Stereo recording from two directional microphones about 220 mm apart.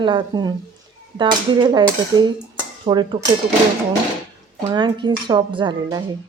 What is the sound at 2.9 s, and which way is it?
Speech, 20° right (ahead or behind).